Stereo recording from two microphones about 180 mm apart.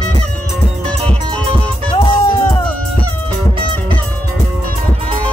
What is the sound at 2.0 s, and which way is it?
Music, 20° left (ahead or behind).